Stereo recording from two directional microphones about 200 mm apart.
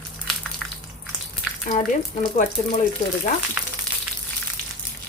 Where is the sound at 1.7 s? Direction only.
40° left (ahead or behind).